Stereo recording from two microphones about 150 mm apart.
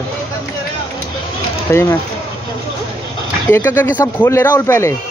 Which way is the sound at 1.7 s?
20° left (ahead or behind).